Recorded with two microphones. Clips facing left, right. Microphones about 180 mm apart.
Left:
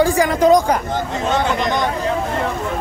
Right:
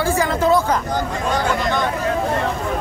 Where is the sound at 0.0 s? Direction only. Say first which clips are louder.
Left 4 dB; 15° left (ahead or behind).